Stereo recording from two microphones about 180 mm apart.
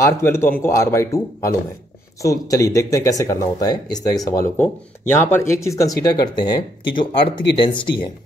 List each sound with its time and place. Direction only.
0.0 s speech: 15° left (ahead or behind)